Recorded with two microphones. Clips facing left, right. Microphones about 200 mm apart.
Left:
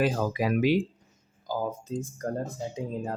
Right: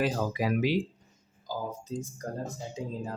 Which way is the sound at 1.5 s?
55° left (ahead or behind).